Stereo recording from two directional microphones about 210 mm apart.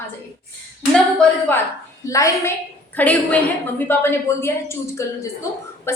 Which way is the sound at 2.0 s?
15° left (ahead or behind).